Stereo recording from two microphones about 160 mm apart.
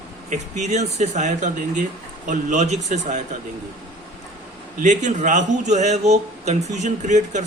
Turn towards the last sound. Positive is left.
turn(degrees=-50)  # may be behind; listen again after turning